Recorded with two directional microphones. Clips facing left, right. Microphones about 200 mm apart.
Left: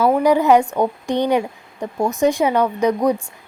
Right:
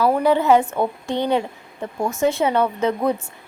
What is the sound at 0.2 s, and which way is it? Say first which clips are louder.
Speech: left 2 dB; 15° left (ahead or behind).